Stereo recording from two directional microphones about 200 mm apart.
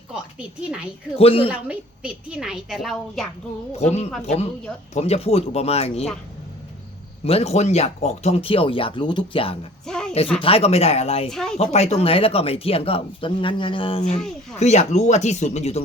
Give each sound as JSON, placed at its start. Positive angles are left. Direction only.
{"t": 0.1, "sound": "a woman's voice", "side_deg": -5}
{"t": 1.1, "sound": "speech", "side_deg": 30}
{"t": 1.6, "sound": "a woman's voice", "side_deg": -5}
{"t": 3.7, "sound": "speech", "side_deg": 30}
{"t": 7.3, "sound": "speech", "side_deg": 30}
{"t": 9.8, "sound": "a sound", "side_deg": 5}
{"t": 10.4, "sound": "speech", "side_deg": 30}
{"t": 11.3, "sound": "a woman's voice", "side_deg": 0}
{"t": 11.5, "sound": "speech", "side_deg": 30}